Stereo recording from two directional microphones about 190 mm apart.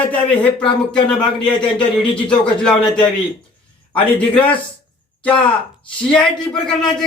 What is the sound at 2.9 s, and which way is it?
Speech, 25° left (ahead or behind).